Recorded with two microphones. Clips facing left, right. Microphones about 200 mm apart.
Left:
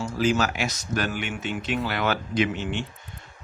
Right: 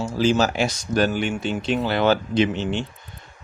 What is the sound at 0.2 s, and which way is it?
Speech, 30° right (ahead or behind).